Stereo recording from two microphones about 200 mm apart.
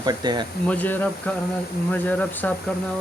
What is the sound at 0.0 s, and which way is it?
Speech, 20° right (ahead or behind).